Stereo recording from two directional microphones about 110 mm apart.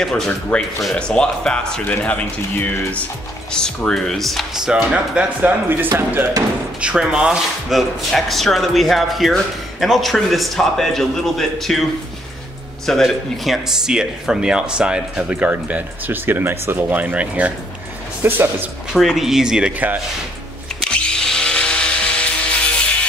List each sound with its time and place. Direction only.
0.0 s a man's voice: 10° left (ahead or behind); by 6.2 s 20° right (ahead or behind)
6.8 s speech: 10° right (ahead or behind)
12.8 s speech: centre (ahead or behind); by 18.4 s 20° right (ahead or behind)
18.9 s speech: centre (ahead or behind)
20.8 s power tool: 5° left (ahead or behind)